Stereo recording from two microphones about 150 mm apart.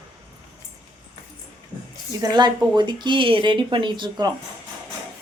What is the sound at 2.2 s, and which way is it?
A woman's voice, 30° right (ahead or behind).